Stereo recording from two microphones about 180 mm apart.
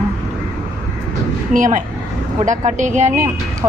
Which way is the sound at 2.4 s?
45° right (ahead or behind).